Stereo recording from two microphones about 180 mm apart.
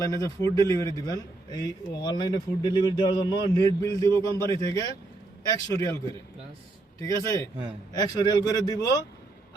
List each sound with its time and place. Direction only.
0.0 s a man's voice: 15° left (ahead or behind)
7.0 s a man's voice: 20° left (ahead or behind)